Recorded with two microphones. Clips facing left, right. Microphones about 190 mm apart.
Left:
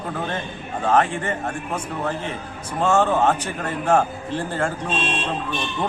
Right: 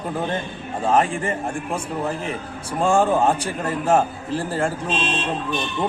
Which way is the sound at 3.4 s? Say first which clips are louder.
Right 2 dB; 35° right (ahead or behind).